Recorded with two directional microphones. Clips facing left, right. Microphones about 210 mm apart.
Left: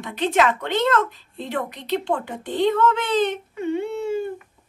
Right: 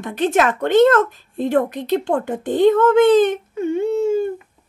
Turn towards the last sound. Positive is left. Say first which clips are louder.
# right 6 dB
turn(degrees=-45)  # may be behind; listen again after turning